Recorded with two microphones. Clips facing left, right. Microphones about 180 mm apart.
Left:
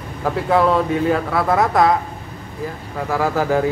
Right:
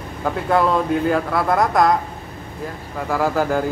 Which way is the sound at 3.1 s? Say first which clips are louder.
Left 1 dB; centre (ahead or behind).